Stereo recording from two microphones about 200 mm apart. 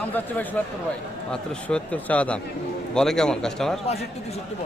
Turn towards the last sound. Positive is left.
turn(degrees=0)  # may be behind; listen again after turning